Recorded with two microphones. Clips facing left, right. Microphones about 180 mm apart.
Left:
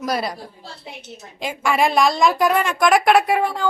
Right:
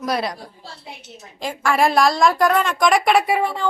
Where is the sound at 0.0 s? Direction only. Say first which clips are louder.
Even; centre (ahead or behind).